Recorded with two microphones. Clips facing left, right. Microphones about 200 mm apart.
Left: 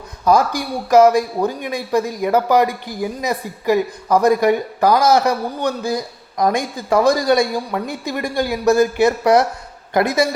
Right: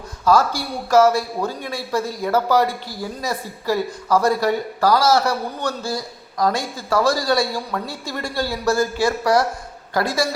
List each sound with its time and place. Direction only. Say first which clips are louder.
0.3 s a woman's voice: left 2 dB; 15° left (ahead or behind)